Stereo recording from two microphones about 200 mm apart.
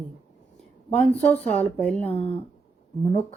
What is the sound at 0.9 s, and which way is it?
Speech, 5° left (ahead or behind).